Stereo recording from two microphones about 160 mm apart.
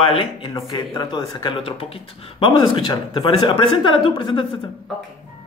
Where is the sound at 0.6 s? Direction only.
25° left (ahead or behind).